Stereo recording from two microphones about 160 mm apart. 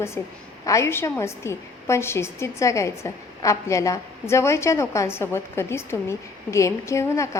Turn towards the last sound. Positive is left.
turn(degrees=20)  # may be behind; listen again after turning